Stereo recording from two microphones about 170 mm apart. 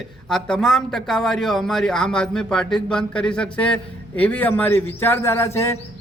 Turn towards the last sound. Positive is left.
turn(degrees=15)  # may be behind; listen again after turning